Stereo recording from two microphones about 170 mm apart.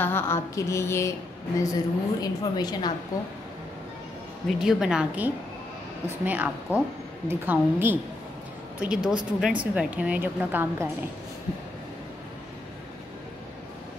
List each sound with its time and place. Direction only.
0.0 s a woman's voice: 15° left (ahead or behind)
4.5 s a woman's voice: centre (ahead or behind)